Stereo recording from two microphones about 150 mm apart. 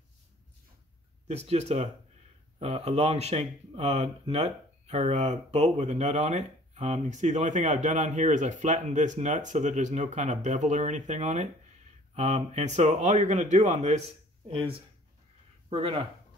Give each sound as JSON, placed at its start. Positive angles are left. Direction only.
{"t": 1.2, "sound": "speech", "side_deg": -45}